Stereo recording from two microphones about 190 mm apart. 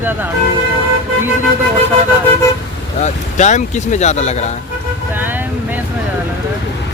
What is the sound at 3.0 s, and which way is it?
Speech, 40° left (ahead or behind).